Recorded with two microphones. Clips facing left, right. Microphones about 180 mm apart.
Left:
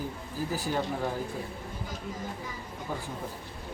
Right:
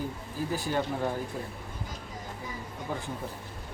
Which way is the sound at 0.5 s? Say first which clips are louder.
Right 1 dB; 5° left (ahead or behind).